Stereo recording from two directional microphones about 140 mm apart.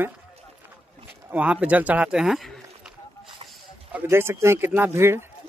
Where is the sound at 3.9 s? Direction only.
15° right (ahead or behind).